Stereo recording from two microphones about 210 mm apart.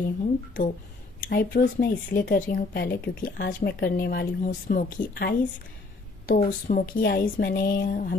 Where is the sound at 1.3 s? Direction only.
45° left (ahead or behind).